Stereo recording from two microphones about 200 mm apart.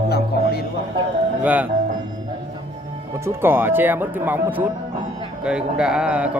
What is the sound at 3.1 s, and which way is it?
Speech, 10° right (ahead or behind).